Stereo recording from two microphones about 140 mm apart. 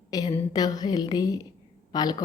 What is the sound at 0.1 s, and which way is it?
A woman's voice, 30° left (ahead or behind).